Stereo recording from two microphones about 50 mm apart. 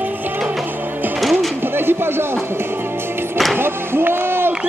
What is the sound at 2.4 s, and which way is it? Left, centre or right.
Music, right.